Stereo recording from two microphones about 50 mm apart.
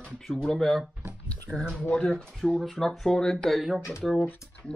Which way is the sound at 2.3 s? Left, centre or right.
Centre.